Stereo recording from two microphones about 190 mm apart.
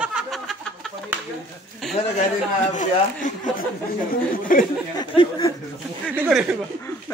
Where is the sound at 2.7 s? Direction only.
40° left (ahead or behind).